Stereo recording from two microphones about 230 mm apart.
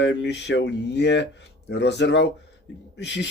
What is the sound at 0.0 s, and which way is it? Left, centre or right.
Speech, left.